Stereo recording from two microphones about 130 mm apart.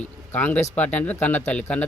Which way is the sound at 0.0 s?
10° left (ahead or behind).